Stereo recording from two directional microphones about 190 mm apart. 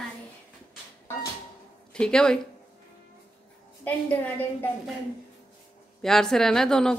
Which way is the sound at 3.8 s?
10° left (ahead or behind).